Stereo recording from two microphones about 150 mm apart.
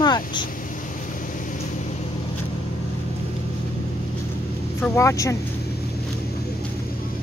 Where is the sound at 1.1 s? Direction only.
60° left (ahead or behind).